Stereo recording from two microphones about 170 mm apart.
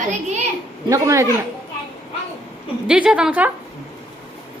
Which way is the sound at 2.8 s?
5° right (ahead or behind).